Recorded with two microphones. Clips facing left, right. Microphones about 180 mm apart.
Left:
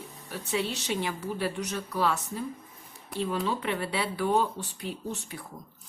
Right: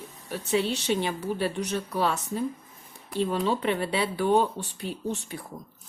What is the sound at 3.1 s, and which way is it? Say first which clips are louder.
Speech: right 4 dB; 30° right (ahead or behind).